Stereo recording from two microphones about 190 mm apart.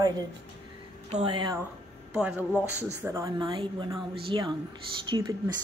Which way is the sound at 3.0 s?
15° right (ahead or behind).